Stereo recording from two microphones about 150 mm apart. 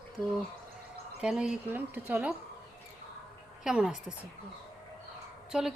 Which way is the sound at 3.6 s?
5° right (ahead or behind).